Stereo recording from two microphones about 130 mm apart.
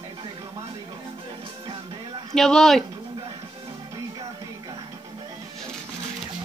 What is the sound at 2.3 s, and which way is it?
Speech, 5° left (ahead or behind).